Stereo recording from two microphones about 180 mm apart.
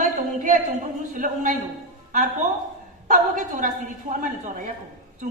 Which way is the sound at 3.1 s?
50° right (ahead or behind).